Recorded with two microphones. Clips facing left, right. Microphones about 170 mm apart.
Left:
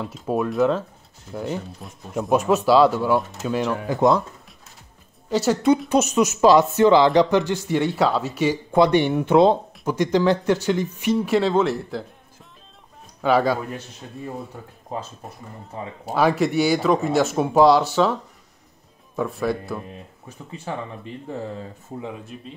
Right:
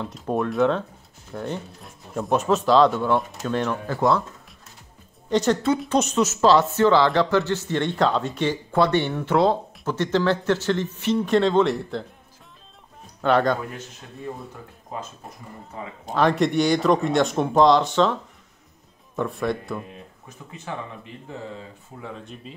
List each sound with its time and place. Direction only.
0.0 s speech: 5° left (ahead or behind)
5.3 s speech: 5° left (ahead or behind)
13.2 s speech: 5° left (ahead or behind)
16.1 s speech: 10° left (ahead or behind)
19.1 s speech: 5° left (ahead or behind)
20.2 s speech: 35° left (ahead or behind)
22.2 s speech: 5° left (ahead or behind)